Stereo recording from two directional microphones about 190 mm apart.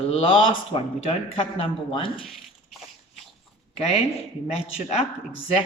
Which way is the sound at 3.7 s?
30° left (ahead or behind).